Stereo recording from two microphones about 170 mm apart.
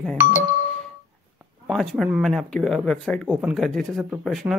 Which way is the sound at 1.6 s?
Centre (ahead or behind).